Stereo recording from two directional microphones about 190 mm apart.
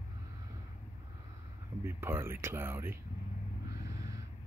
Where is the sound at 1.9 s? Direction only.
10° right (ahead or behind).